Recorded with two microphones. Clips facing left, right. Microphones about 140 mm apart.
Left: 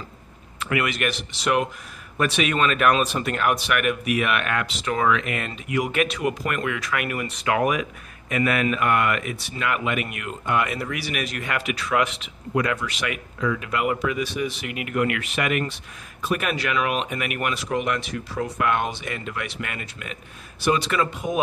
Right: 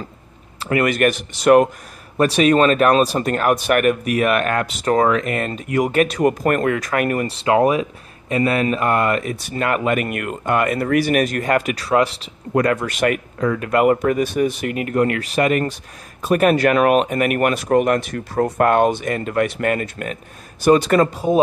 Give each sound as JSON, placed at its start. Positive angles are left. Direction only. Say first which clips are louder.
{"t": 0.6, "sound": "speech", "louder": "right 7 dB", "side_deg": -40}
{"t": 12.5, "sound": "speech", "louder": "right 7 dB", "side_deg": -50}